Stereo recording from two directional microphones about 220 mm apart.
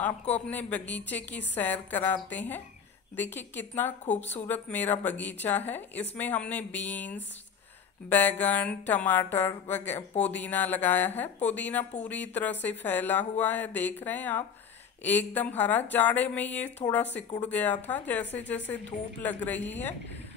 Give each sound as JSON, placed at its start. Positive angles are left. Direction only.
{"t": 0.3, "sound": "speech", "side_deg": 5}
{"t": 18.2, "sound": "speech", "side_deg": 55}
{"t": 19.2, "sound": "speech", "side_deg": 5}